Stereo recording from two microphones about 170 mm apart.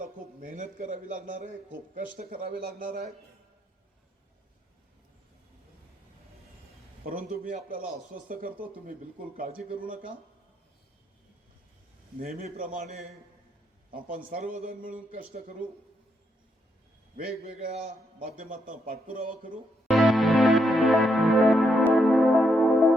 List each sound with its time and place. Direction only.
0.0 s a man's voice: 50° right (ahead or behind)
7.0 s speech: 55° right (ahead or behind)
12.4 s speech: 55° right (ahead or behind)
14.3 s speech: 55° right (ahead or behind)
17.4 s a man's voice: 40° right (ahead or behind)
18.2 s speech: 55° right (ahead or behind)
19.9 s music: centre (ahead or behind)